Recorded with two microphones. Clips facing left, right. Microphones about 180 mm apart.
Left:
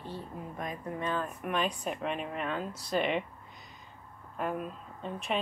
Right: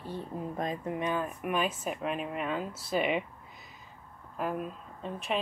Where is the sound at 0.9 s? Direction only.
15° right (ahead or behind).